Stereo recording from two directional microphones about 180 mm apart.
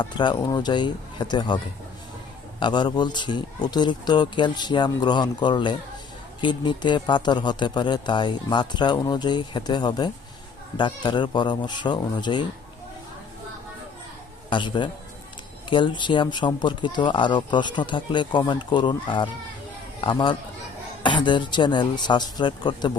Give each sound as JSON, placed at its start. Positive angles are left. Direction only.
{"t": 0.0, "sound": "speech", "side_deg": 25}
{"t": 14.5, "sound": "speech", "side_deg": 25}